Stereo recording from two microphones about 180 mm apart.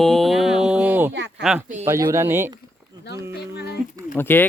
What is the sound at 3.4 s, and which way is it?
Speech, 65° left (ahead or behind).